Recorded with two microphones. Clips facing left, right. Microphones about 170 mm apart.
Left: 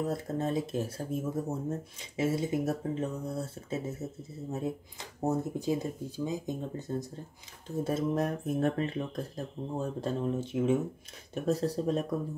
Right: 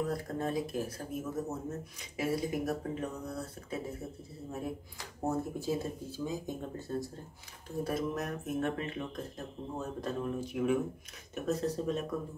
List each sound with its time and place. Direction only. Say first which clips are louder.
0.0 s speech: left 2 dB; 25° left (ahead or behind)